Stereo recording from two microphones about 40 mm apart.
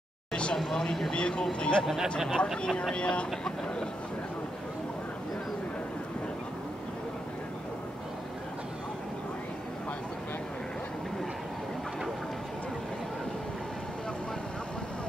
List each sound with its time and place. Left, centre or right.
0.3 s a sound: left
0.6 s speech: centre
1.1 s speech: left
3.0 s speech: left